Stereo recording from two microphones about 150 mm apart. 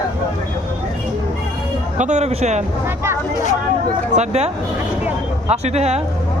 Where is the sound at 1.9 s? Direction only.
50° right (ahead or behind).